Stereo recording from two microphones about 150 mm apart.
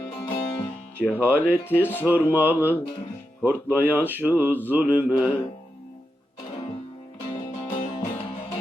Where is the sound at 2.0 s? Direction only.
10° right (ahead or behind).